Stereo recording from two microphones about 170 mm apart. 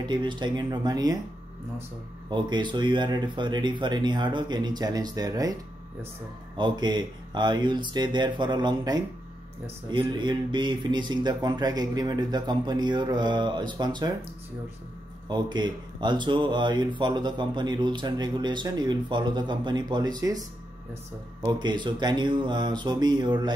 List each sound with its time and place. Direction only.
0.0 s speech: 25° right (ahead or behind)
2.2 s speech: 25° right (ahead or behind)
15.2 s speech: 25° right (ahead or behind)